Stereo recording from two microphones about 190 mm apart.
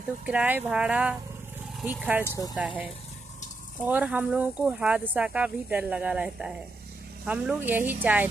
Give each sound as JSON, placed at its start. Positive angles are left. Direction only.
{"t": 0.2, "sound": "speech", "side_deg": -5}
{"t": 2.2, "sound": "speech", "side_deg": 15}
{"t": 3.8, "sound": "speech", "side_deg": -5}